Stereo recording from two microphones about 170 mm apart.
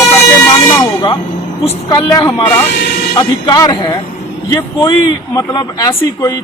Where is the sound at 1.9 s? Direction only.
20° left (ahead or behind).